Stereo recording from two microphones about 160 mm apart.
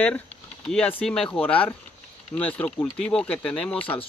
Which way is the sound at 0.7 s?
10° left (ahead or behind).